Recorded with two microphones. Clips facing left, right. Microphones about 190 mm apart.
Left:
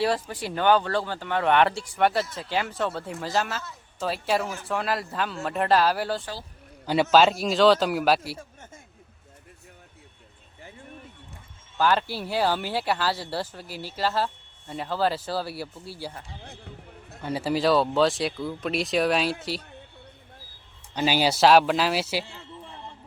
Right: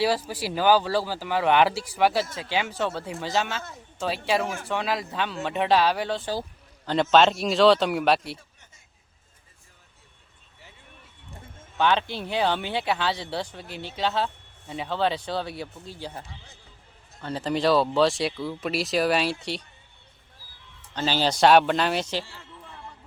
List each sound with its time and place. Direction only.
0.0 s speech: 5° right (ahead or behind)
4.6 s speech: centre (ahead or behind)
11.8 s speech: 5° left (ahead or behind)
16.4 s a sound: 60° left (ahead or behind)
17.2 s speech: 10° left (ahead or behind)
20.9 s speech: 10° left (ahead or behind)
22.2 s a sound: 20° left (ahead or behind)